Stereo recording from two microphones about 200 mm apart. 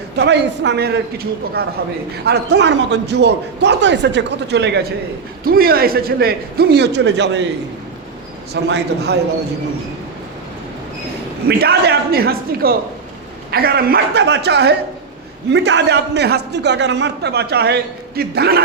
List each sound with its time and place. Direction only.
0.2 s a man's voice: 60° right (ahead or behind)
8.5 s a man's voice: 55° right (ahead or behind)
11.4 s a man's voice: 55° right (ahead or behind)